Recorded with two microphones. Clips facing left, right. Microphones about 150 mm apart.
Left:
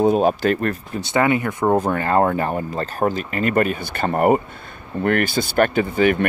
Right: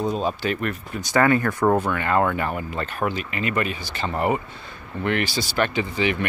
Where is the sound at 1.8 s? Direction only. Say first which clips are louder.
Left 3 dB; 35° left (ahead or behind).